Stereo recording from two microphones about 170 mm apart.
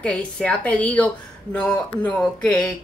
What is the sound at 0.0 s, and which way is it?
Speech, 5° left (ahead or behind).